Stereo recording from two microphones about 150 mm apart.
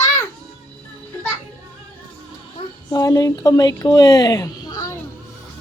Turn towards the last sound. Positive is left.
turn(degrees=25)  # may be behind; listen again after turning